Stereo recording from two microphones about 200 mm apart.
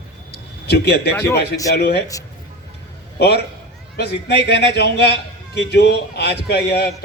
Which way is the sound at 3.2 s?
55° left (ahead or behind).